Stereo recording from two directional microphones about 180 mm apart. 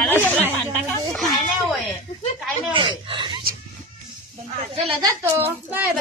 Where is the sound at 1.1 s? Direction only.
Centre (ahead or behind).